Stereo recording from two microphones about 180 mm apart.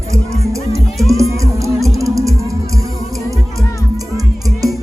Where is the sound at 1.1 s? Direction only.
15° right (ahead or behind).